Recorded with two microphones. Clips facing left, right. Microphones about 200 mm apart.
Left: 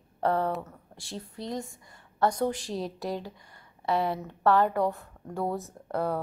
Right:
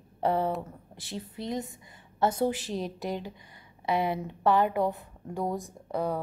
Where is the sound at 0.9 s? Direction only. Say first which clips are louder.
Right 1 dB; centre (ahead or behind).